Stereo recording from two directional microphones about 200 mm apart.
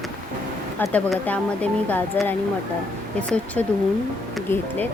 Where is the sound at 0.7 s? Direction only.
10° left (ahead or behind).